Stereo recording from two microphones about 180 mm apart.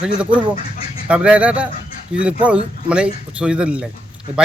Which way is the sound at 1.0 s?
5° right (ahead or behind).